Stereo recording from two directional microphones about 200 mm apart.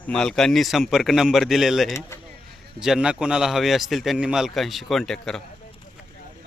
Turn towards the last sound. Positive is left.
turn(degrees=0)  # may be behind; listen again after turning